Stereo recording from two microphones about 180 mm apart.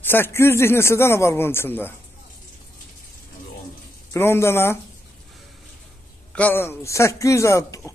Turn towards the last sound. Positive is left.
turn(degrees=15)  # may be behind; listen again after turning